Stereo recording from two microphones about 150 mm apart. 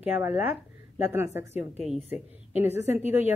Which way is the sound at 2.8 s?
50° left (ahead or behind).